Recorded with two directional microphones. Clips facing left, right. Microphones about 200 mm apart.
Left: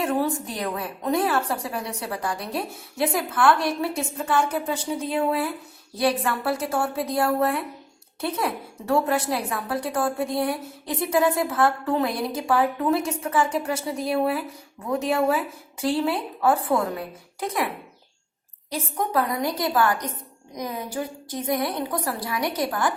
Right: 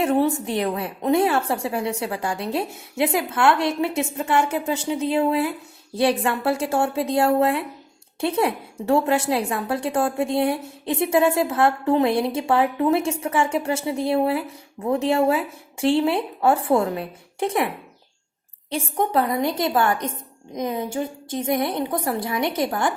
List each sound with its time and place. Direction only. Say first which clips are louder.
0.0 s a woman's voice: right 4 dB; 25° right (ahead or behind)
18.7 s a woman's voice: right 3 dB; 30° right (ahead or behind)